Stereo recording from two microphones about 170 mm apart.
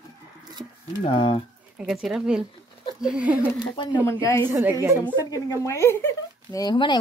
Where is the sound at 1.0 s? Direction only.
35° left (ahead or behind).